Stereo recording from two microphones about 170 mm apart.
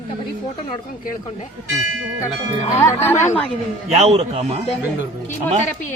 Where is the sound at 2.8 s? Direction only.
15° left (ahead or behind).